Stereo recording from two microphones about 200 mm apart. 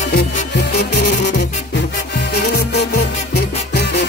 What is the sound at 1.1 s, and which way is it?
Music, 55° left (ahead or behind).